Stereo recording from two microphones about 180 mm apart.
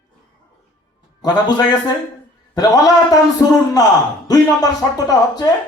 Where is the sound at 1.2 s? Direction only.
20° left (ahead or behind).